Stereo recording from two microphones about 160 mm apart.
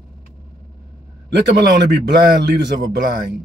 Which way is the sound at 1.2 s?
90° right.